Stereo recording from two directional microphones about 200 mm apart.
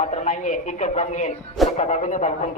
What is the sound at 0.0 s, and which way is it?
Speech, 35° left (ahead or behind).